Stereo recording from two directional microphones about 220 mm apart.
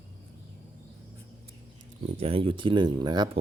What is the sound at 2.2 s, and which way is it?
Speech, 25° right (ahead or behind).